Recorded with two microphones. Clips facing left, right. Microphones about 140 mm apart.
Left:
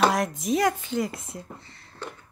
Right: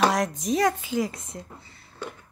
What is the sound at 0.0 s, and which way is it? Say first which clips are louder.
Speech: even; centre (ahead or behind).